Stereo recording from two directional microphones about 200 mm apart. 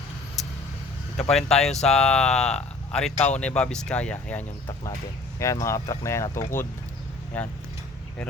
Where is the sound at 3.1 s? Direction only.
35° left (ahead or behind).